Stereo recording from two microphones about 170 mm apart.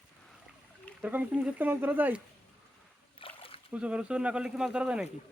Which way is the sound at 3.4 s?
30° left (ahead or behind).